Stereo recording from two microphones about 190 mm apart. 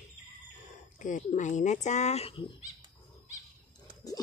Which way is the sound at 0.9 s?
40° left (ahead or behind).